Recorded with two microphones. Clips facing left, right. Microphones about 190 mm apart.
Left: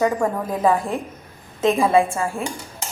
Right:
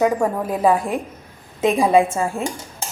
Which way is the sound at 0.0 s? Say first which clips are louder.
Right 2 dB; 10° right (ahead or behind).